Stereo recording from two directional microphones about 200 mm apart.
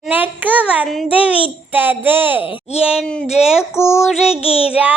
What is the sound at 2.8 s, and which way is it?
Speech, centre (ahead or behind).